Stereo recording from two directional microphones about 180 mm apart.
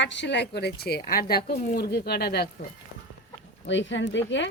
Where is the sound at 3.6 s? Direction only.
90° left.